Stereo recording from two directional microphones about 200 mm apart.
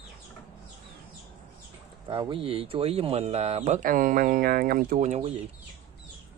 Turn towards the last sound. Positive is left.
turn(degrees=-35)  # may be behind; listen again after turning